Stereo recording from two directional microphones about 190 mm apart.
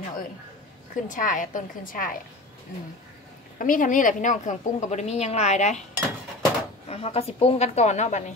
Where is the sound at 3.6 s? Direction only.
45° left (ahead or behind).